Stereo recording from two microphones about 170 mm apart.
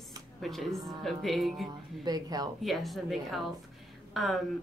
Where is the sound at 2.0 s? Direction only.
25° right (ahead or behind).